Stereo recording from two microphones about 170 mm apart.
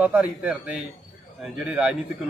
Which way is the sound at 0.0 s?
10° right (ahead or behind).